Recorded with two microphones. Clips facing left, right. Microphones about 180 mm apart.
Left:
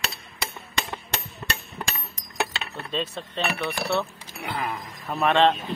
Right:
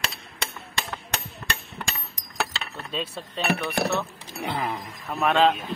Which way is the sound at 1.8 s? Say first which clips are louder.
Left 3 dB; 25° left (ahead or behind).